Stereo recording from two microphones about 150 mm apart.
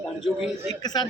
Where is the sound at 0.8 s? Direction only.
30° left (ahead or behind).